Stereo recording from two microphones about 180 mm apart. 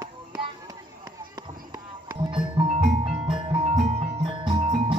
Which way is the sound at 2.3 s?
30° right (ahead or behind).